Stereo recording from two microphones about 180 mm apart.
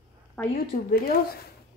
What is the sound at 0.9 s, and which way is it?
Speech, 60° left (ahead or behind).